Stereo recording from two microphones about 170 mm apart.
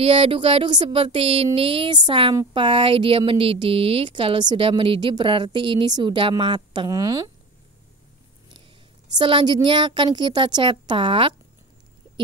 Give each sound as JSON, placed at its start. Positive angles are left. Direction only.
{"t": 0.0, "sound": "speech", "side_deg": -35}
{"t": 9.2, "sound": "speech", "side_deg": -30}